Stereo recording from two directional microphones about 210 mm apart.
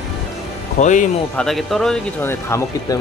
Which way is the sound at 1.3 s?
Centre (ahead or behind).